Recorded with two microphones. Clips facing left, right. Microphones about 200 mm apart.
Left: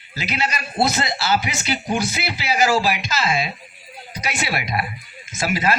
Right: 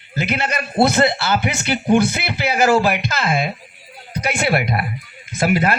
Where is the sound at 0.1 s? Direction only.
55° right (ahead or behind).